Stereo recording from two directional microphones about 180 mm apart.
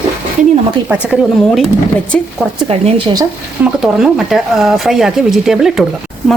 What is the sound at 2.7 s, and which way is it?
Speech, 35° right (ahead or behind).